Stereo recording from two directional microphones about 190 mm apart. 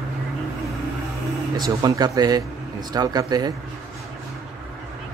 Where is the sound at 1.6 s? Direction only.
20° right (ahead or behind).